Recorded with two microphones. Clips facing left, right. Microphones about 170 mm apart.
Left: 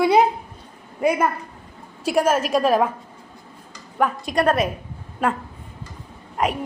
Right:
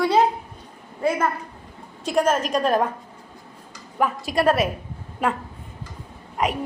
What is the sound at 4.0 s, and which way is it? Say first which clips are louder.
Speech: left 1 dB; centre (ahead or behind).